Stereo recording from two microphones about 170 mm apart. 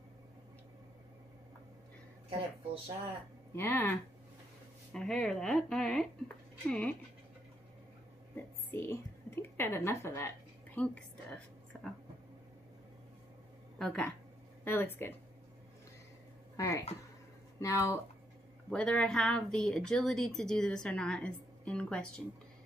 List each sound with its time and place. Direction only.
2.2 s speech: 30° right (ahead or behind)
3.5 s speech: 15° left (ahead or behind)
4.9 s speech: centre (ahead or behind)
8.7 s speech: 15° left (ahead or behind)
13.7 s speech: 5° left (ahead or behind)
16.5 s speech: 20° left (ahead or behind)
18.7 s speech: 5° left (ahead or behind)